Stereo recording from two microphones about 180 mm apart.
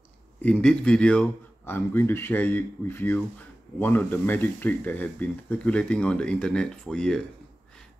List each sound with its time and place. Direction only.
0.4 s speech: 5° left (ahead or behind)